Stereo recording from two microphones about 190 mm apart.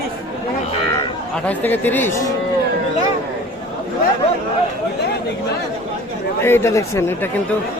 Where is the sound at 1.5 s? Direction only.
10° left (ahead or behind).